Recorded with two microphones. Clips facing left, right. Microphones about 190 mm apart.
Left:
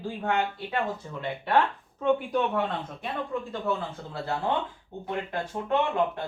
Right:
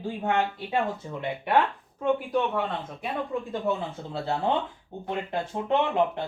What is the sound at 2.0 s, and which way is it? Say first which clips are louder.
Speech: even; centre (ahead or behind).